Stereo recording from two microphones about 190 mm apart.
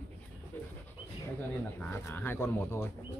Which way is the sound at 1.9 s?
10° left (ahead or behind).